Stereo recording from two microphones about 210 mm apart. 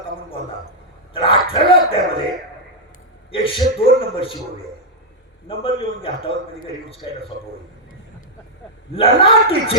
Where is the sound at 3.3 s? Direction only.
25° left (ahead or behind).